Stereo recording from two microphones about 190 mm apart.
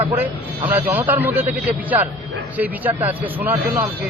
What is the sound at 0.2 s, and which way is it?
Speech, 10° right (ahead or behind).